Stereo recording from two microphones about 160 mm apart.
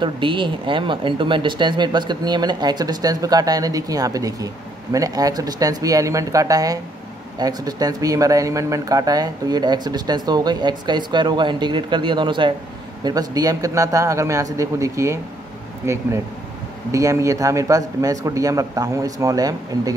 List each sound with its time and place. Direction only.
0.0 s speech: 30° right (ahead or behind)